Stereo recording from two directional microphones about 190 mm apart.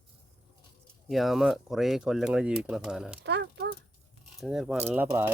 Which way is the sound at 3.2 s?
65° right (ahead or behind).